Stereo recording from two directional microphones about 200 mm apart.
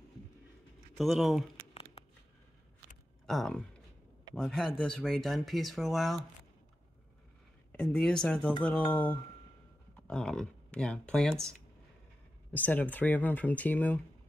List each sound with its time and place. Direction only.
0.9 s speech: centre (ahead or behind)
1.7 s a sound: 30° left (ahead or behind)
3.3 s speech: centre (ahead or behind)
7.7 s speech: 5° left (ahead or behind)
10.0 s speech: 5° left (ahead or behind)
12.5 s speech: 10° left (ahead or behind)